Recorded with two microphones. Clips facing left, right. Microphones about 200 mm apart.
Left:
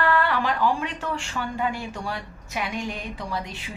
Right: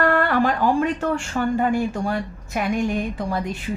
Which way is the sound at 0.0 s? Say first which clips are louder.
Right 4 dB; 50° right (ahead or behind).